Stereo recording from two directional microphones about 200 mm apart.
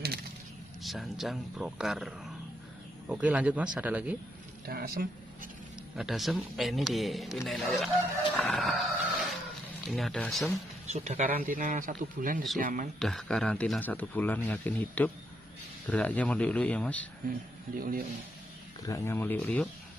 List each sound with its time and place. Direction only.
0.8 s a man's voice: centre (ahead or behind)
4.6 s speech: 50° right (ahead or behind)
5.9 s speech: centre (ahead or behind)
8.4 s a sound: centre (ahead or behind)
9.8 s speech: centre (ahead or behind)
10.9 s speech: 35° right (ahead or behind)
13.0 s a man's voice: 5° left (ahead or behind)
17.7 s speech: 45° right (ahead or behind)
18.9 s a man's voice: 15° left (ahead or behind)